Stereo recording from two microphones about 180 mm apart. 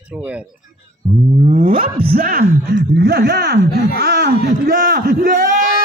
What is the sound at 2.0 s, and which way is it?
Speech, 55° right (ahead or behind).